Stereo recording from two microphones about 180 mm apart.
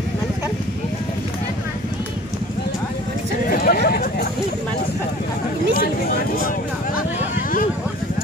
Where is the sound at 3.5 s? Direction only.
55° left (ahead or behind).